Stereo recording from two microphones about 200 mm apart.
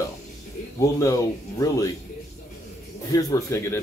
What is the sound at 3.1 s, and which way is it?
Speech, 15° left (ahead or behind).